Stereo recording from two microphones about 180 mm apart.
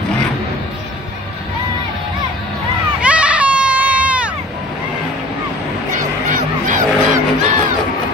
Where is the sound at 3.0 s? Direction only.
5° right (ahead or behind).